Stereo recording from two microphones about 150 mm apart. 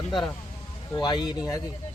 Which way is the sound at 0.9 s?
30° left (ahead or behind).